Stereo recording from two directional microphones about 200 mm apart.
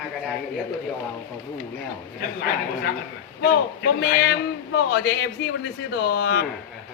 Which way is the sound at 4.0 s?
60° left (ahead or behind).